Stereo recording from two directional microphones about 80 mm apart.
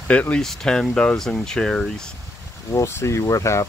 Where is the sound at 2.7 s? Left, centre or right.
Left.